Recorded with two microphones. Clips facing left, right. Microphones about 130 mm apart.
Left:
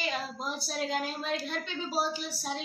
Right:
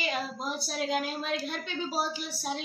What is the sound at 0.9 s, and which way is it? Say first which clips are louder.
Speech: right 3 dB; 5° right (ahead or behind).